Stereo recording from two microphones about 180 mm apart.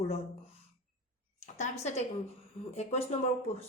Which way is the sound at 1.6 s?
40° left (ahead or behind).